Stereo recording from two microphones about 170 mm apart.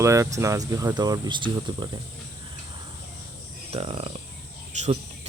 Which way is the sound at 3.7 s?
35° right (ahead or behind).